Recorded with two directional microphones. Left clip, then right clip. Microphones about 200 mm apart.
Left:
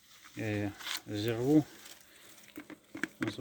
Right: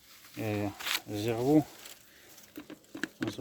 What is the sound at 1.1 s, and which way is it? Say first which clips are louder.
Speech: right 1 dB; centre (ahead or behind).